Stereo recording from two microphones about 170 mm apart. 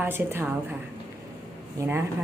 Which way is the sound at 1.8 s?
20° right (ahead or behind).